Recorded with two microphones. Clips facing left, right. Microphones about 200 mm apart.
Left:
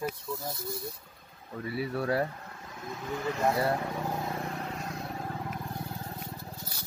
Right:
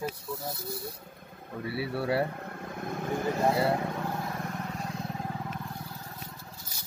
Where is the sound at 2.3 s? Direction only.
55° right (ahead or behind).